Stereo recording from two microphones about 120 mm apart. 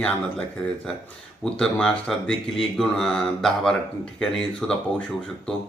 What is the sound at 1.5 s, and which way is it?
Speech, 10° left (ahead or behind).